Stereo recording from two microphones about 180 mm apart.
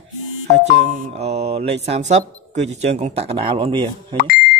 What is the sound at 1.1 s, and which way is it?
Speech, 35° right (ahead or behind).